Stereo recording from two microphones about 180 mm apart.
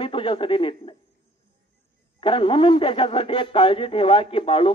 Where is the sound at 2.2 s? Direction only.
30° left (ahead or behind).